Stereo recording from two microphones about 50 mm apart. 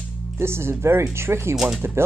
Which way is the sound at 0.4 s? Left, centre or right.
Right.